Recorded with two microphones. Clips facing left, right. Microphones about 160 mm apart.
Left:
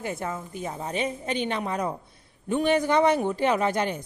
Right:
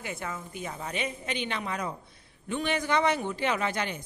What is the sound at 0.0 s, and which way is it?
A man's voice, 40° left (ahead or behind).